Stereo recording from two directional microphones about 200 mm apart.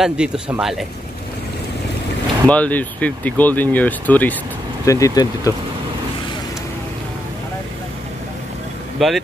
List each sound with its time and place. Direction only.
0.0 s speech: 5° right (ahead or behind)
2.4 s speech: 5° left (ahead or behind)
9.0 s speech: centre (ahead or behind)